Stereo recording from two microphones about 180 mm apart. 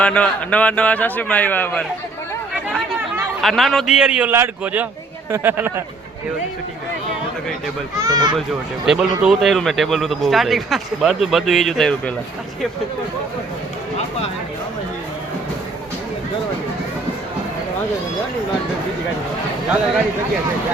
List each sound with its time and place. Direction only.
0.0 s a man's voice: 5° left (ahead or behind)
3.4 s a man's voice: centre (ahead or behind)
7.9 s speech: 20° right (ahead or behind)
8.9 s a man's voice: 5° right (ahead or behind)